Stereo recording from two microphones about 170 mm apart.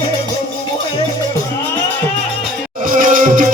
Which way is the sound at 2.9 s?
50° right (ahead or behind).